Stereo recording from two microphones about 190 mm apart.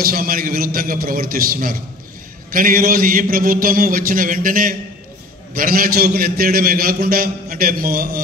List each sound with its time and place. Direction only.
0.0 s a man's voice: 50° right (ahead or behind)